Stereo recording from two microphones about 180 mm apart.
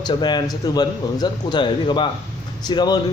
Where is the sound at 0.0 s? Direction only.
25° left (ahead or behind).